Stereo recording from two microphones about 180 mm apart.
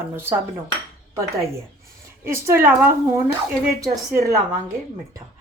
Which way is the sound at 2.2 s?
15° right (ahead or behind).